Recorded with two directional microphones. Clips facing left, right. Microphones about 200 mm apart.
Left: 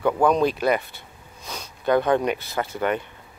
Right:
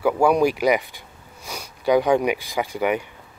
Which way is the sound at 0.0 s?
10° right (ahead or behind).